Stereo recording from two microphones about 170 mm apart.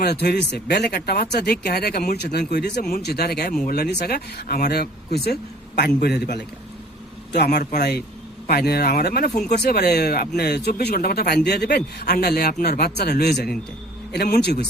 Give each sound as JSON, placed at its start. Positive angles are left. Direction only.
{"t": 0.0, "sound": "a man's voice", "side_deg": 70}